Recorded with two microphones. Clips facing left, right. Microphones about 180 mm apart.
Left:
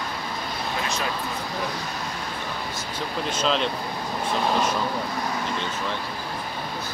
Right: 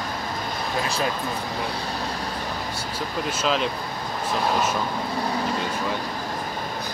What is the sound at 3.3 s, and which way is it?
Speech, 5° right (ahead or behind).